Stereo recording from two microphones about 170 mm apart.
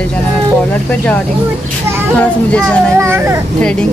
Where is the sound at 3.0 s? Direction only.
15° right (ahead or behind).